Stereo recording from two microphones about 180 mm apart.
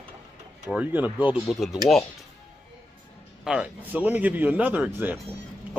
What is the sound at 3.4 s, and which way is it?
A man's voice, 5° right (ahead or behind).